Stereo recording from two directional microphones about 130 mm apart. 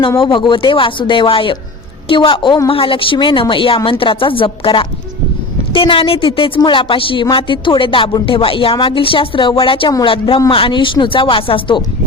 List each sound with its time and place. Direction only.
0.2 s a woman's voice: 40° left (ahead or behind)